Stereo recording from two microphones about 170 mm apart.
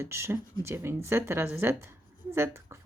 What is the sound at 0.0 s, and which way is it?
Speech, 15° right (ahead or behind).